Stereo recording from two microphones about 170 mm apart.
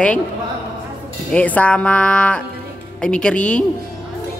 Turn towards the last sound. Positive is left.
turn(degrees=5)  # may be behind; listen again after turning